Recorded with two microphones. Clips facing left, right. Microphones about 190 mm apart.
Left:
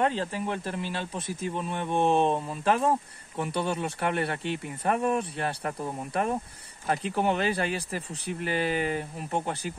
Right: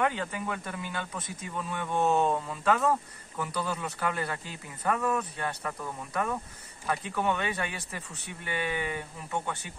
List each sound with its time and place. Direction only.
0.0 s speech: 25° left (ahead or behind)